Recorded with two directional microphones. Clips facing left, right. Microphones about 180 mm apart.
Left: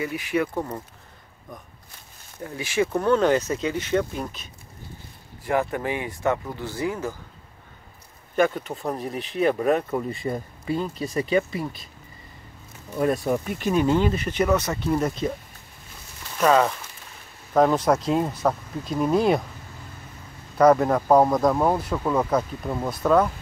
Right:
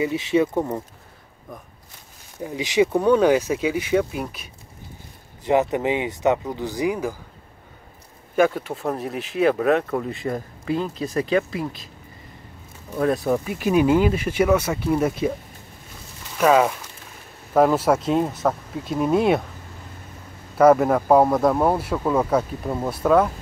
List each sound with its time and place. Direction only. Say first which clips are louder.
0.0 s speech: right 5 dB; 25° right (ahead or behind)
2.4 s speech: right 5 dB; 15° right (ahead or behind)
5.4 s speech: right 5 dB; 20° right (ahead or behind)
8.4 s speech: right 3 dB; 5° right (ahead or behind)
12.9 s speech: right 2 dB; centre (ahead or behind)
16.3 s speech: right 2 dB; 10° right (ahead or behind)
20.5 s speech: right 2 dB; 5° right (ahead or behind)